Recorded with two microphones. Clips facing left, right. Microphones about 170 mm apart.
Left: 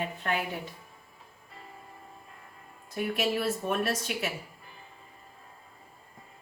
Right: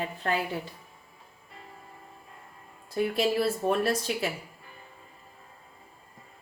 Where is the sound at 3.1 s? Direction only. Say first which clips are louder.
Right 2 dB; 35° right (ahead or behind).